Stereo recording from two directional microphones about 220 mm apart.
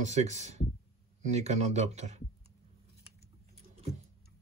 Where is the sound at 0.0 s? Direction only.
30° right (ahead or behind).